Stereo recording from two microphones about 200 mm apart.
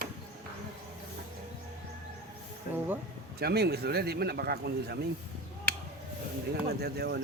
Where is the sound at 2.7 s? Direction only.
45° left (ahead or behind).